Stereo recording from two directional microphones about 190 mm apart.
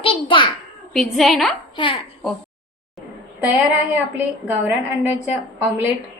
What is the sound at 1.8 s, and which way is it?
Speech, 25° left (ahead or behind).